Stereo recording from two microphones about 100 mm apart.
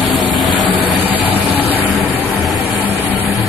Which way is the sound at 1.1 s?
15° right (ahead or behind).